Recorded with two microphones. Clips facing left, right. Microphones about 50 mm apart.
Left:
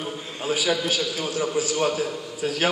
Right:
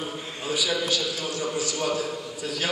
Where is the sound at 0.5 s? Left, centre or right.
Left.